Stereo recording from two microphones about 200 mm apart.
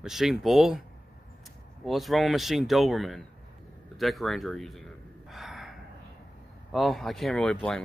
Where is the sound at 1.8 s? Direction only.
Centre (ahead or behind).